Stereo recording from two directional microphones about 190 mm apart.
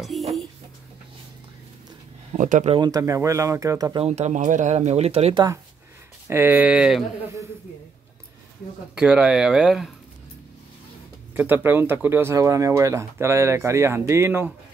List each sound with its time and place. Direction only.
0.1 s a sound: centre (ahead or behind)
2.3 s speech: 40° right (ahead or behind)
2.7 s speech: 20° right (ahead or behind)
4.0 s speech: 35° right (ahead or behind)
6.2 s speech: 10° right (ahead or behind)
8.9 s speech: 5° right (ahead or behind)
11.3 s speech: 10° right (ahead or behind)